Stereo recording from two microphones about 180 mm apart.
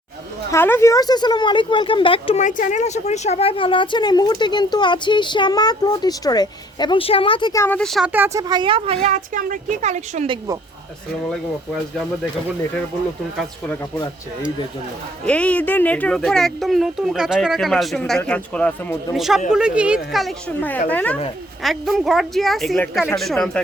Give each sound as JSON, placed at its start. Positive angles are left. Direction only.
{"t": 0.5, "sound": "speech", "side_deg": 15}
{"t": 2.4, "sound": "speech", "side_deg": 45}
{"t": 7.6, "sound": "speech", "side_deg": 5}
{"t": 8.1, "sound": "speech", "side_deg": -15}
{"t": 9.0, "sound": "speech", "side_deg": -45}
{"t": 10.2, "sound": "speech", "side_deg": -20}
{"t": 15.3, "sound": "a man's voice", "side_deg": 5}
{"t": 20.6, "sound": "a man's voice", "side_deg": 10}